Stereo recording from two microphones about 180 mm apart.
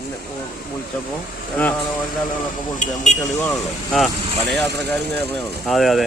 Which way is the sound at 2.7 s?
40° left (ahead or behind).